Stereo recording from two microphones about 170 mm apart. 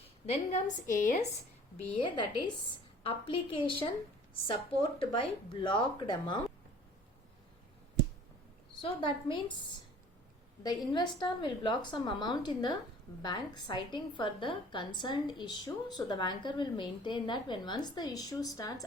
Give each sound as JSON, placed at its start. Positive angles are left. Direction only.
{"t": 0.9, "sound": "speech", "side_deg": 45}
{"t": 2.0, "sound": "a woman's voice", "side_deg": 25}
{"t": 8.8, "sound": "a woman's voice", "side_deg": 30}
{"t": 10.6, "sound": "a woman's voice", "side_deg": 25}